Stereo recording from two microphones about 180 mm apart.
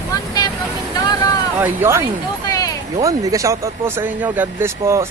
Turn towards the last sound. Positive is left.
turn(degrees=-15)  # may be behind; listen again after turning